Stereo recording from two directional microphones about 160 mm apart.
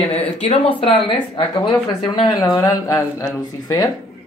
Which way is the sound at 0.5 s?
35° left (ahead or behind).